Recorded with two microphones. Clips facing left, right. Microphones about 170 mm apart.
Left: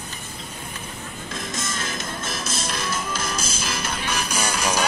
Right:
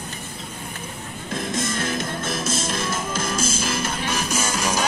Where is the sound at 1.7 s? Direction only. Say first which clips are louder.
Right 5 dB; 55° right (ahead or behind).